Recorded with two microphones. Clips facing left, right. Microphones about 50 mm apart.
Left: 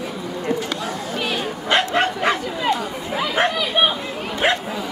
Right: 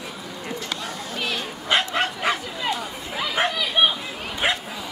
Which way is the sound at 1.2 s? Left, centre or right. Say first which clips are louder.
Left 3 dB; centre.